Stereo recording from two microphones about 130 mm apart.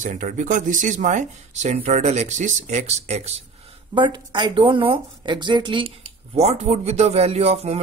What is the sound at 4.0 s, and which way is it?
Speech, 35° right (ahead or behind).